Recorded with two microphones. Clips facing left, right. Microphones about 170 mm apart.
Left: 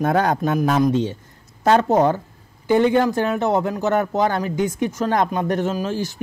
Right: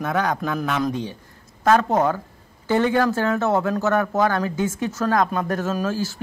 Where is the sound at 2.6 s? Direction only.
15° left (ahead or behind).